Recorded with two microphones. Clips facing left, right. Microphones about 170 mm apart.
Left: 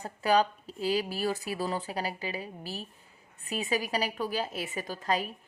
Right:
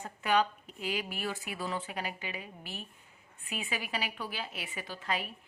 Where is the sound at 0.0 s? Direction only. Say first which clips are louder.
Left 4 dB; 35° left (ahead or behind).